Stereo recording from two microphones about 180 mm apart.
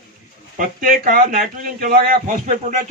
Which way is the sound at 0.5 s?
50° right (ahead or behind).